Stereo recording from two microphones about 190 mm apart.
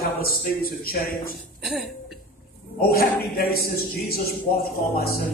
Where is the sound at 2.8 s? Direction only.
50° left (ahead or behind).